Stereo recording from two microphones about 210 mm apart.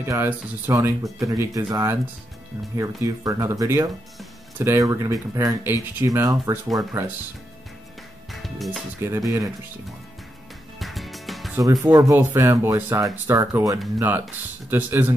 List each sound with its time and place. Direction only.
0.0 s speech: 10° right (ahead or behind)
8.3 s music: centre (ahead or behind)
9.0 s speech: 15° right (ahead or behind)
10.8 s music: centre (ahead or behind)
11.5 s speech: 15° right (ahead or behind)